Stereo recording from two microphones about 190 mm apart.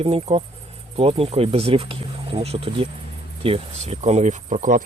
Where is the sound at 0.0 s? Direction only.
30° right (ahead or behind).